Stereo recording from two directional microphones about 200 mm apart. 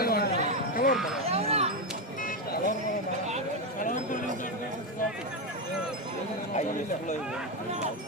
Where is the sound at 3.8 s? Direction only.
40° left (ahead or behind).